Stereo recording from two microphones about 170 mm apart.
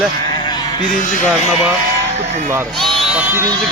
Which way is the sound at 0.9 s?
50° left (ahead or behind).